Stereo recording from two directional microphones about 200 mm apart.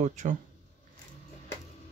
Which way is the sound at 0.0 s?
40° right (ahead or behind).